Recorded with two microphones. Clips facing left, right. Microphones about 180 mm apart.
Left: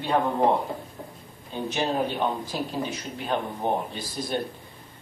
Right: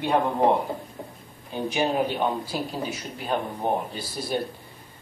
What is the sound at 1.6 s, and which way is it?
A man's voice, 10° right (ahead or behind).